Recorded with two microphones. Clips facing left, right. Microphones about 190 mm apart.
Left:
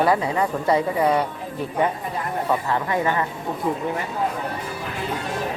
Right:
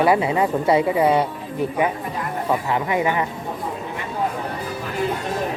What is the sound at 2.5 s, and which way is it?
Speech, 15° right (ahead or behind).